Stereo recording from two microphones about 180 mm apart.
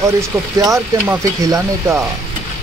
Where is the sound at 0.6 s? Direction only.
20° right (ahead or behind).